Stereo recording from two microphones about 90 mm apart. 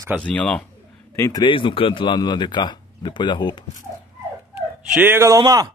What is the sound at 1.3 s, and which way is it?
Speech, 65° left (ahead or behind).